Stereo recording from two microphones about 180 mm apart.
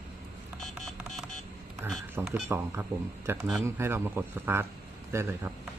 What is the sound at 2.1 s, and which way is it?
Speech, 10° right (ahead or behind).